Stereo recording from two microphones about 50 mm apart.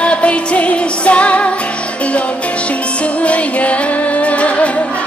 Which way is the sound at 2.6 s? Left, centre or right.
Left.